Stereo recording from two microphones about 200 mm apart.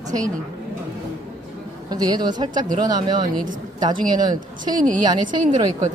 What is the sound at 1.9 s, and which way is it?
Speech, 20° right (ahead or behind).